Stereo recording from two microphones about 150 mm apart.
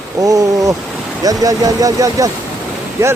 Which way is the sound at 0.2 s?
25° right (ahead or behind).